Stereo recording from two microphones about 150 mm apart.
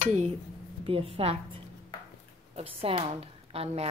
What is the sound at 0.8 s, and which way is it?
A woman's voice, 40° right (ahead or behind).